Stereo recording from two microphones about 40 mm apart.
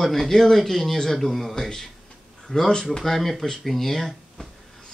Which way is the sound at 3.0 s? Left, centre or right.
Centre.